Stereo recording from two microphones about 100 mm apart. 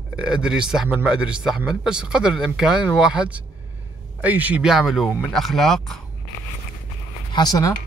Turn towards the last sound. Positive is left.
turn(degrees=40)  # may be behind; listen again after turning